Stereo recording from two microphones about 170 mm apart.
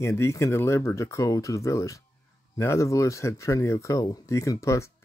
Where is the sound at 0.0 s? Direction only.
15° left (ahead or behind).